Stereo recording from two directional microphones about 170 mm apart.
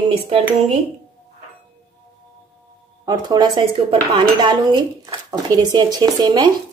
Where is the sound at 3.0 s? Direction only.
20° right (ahead or behind).